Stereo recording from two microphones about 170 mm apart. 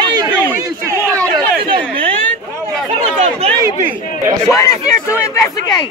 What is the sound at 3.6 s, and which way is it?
Speech, 15° right (ahead or behind).